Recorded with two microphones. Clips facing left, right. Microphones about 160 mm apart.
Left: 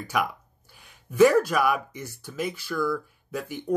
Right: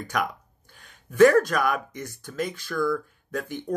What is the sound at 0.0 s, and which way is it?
Speech, 5° left (ahead or behind).